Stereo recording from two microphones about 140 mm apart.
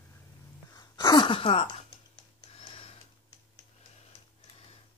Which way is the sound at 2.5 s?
45° left (ahead or behind).